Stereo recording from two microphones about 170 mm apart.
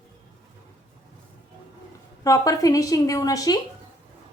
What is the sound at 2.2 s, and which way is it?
A woman's voice, 20° left (ahead or behind).